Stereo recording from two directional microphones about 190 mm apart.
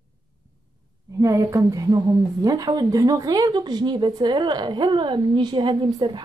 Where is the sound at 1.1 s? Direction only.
15° right (ahead or behind).